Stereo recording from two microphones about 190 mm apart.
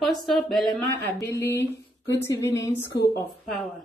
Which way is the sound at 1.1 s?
15° left (ahead or behind).